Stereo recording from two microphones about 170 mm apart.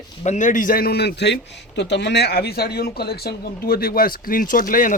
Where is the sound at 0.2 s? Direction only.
45° left (ahead or behind).